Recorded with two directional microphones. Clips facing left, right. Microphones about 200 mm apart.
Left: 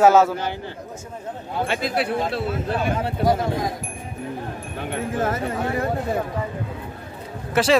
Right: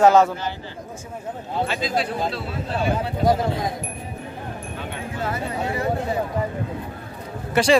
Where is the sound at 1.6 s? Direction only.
60° left (ahead or behind).